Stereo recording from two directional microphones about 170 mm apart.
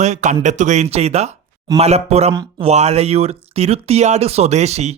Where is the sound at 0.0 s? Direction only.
45° right (ahead or behind).